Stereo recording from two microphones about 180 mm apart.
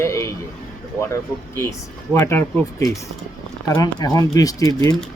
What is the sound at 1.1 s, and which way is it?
Speech, 15° left (ahead or behind).